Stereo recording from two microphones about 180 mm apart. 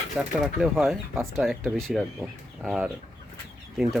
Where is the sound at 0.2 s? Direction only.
Centre (ahead or behind).